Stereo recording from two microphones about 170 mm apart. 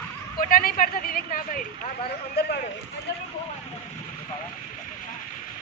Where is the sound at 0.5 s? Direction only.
55° left (ahead or behind).